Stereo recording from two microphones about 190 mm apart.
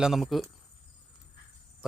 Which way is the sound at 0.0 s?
Centre (ahead or behind).